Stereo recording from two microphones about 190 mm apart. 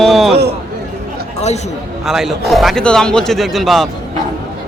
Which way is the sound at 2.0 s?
Centre (ahead or behind).